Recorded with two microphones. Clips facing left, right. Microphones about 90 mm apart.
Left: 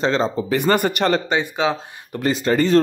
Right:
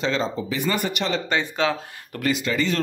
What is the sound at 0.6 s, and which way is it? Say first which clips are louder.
Speech: left 7 dB; 55° left (ahead or behind).